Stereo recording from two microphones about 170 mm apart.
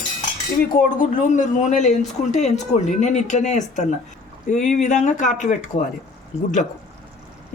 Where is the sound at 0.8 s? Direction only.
50° left (ahead or behind).